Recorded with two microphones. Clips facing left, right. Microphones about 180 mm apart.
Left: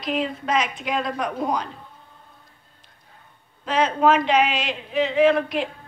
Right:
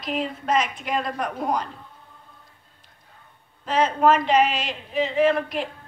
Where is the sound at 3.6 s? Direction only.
5° right (ahead or behind).